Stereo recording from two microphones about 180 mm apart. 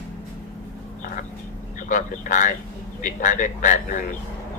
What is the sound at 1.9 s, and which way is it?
A man's voice, 45° left (ahead or behind).